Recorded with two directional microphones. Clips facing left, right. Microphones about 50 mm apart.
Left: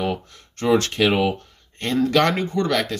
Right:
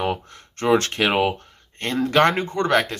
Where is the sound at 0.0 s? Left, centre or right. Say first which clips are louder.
Even; right.